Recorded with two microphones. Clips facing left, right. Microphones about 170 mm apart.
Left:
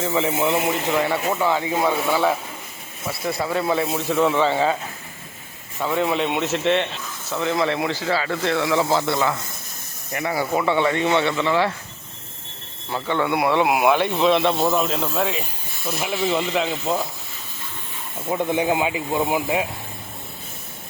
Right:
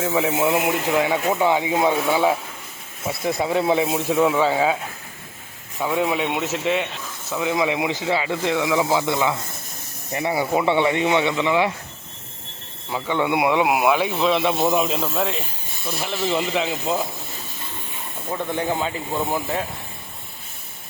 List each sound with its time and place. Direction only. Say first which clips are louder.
0.0 s speech: right 1 dB; 5° right (ahead or behind)
3.1 s speech: right 2 dB; 20° right (ahead or behind)
5.8 s speech: even; 5° right (ahead or behind)
12.9 s speech: even; 10° right (ahead or behind)
18.3 s speech: left 4 dB; 15° left (ahead or behind)